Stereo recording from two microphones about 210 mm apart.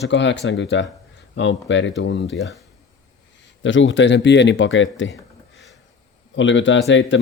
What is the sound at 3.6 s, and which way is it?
Speech, 60° left (ahead or behind).